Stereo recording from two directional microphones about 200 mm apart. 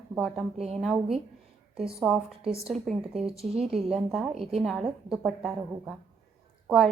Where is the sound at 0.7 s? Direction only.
Centre (ahead or behind).